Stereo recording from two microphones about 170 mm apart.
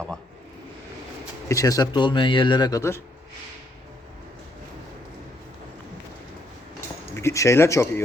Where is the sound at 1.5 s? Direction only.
20° left (ahead or behind).